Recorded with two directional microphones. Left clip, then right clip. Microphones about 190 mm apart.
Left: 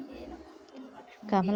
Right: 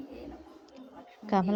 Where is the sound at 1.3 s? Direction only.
Centre (ahead or behind).